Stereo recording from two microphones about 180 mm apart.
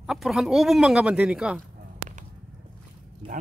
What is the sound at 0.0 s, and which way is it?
Speech, centre (ahead or behind).